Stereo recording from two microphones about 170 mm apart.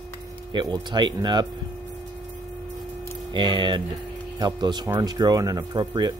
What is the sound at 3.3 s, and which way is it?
Speech, 25° right (ahead or behind).